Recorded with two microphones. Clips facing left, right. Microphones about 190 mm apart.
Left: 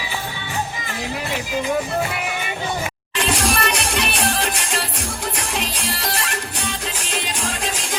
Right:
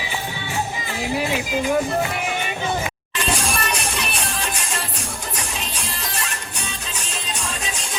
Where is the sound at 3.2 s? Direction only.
65° left (ahead or behind).